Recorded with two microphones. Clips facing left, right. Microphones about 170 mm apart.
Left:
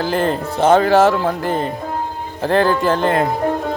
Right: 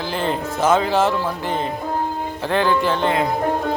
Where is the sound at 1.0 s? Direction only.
50° left (ahead or behind).